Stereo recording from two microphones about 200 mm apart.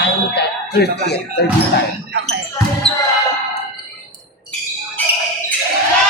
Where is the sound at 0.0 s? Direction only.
55° left (ahead or behind).